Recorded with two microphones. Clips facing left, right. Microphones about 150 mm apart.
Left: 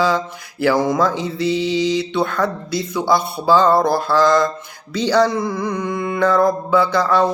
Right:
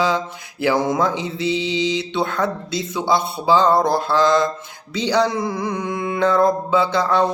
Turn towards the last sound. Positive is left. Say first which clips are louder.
# left 2 dB
turn(degrees=-20)  # may be behind; listen again after turning